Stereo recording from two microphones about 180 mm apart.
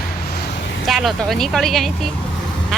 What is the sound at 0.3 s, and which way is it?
Vehicle, 65° left (ahead or behind).